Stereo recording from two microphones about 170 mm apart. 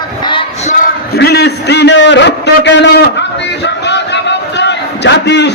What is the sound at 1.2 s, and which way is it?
A man's voice, 75° left (ahead or behind).